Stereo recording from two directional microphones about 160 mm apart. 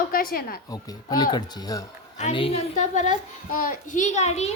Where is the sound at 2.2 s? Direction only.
35° left (ahead or behind).